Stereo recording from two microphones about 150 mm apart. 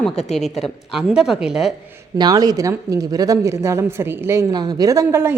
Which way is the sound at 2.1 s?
25° right (ahead or behind).